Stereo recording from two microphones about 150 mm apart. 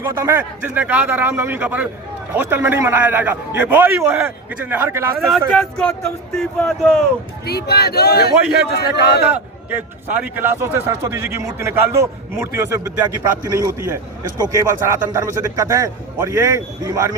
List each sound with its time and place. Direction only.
0.0 s speech: 15° right (ahead or behind)
5.2 s speech: centre (ahead or behind)
7.4 s speech: 90° left
9.3 s a man's voice: 10° right (ahead or behind)